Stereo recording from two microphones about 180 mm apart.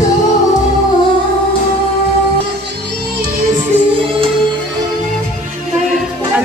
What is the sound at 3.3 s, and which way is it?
Music, 50° right (ahead or behind).